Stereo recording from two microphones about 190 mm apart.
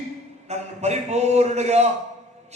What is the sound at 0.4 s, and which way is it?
A man's voice, 35° right (ahead or behind).